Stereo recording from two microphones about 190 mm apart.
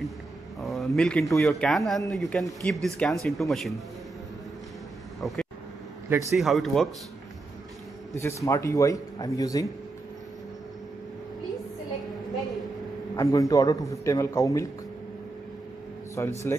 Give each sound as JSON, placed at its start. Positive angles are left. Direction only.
{"t": 0.6, "sound": "a sound", "side_deg": 0}
{"t": 1.4, "sound": "speech", "side_deg": 5}
{"t": 5.2, "sound": "vehicle", "side_deg": 0}
{"t": 6.3, "sound": "speech", "side_deg": 0}
{"t": 8.1, "sound": "speech", "side_deg": 15}
{"t": 13.1, "sound": "speech", "side_deg": 20}
{"t": 16.2, "sound": "speech", "side_deg": 15}